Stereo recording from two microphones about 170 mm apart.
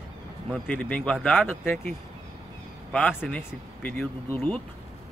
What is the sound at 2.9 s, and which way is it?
Speech, 5° left (ahead or behind).